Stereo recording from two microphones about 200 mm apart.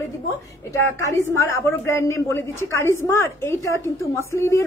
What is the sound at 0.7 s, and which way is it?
A woman's voice, 10° left (ahead or behind).